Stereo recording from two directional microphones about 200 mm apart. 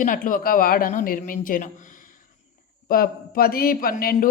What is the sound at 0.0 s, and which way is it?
A man's voice, 45° left (ahead or behind).